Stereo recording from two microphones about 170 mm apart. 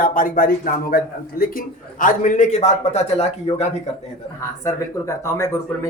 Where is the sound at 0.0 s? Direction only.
55° left (ahead or behind); by 3.7 s 40° left (ahead or behind).